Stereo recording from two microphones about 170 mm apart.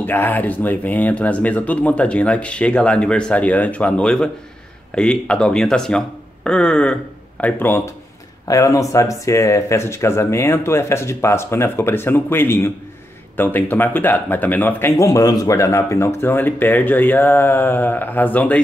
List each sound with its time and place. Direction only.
0.0 s speech: 10° left (ahead or behind)